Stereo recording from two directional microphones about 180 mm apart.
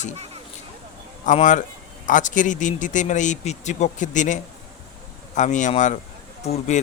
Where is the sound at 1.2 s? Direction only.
45° left (ahead or behind).